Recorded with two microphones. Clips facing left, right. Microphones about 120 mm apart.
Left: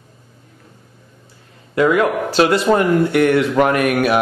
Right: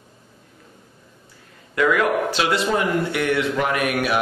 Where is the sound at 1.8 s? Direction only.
30° left (ahead or behind).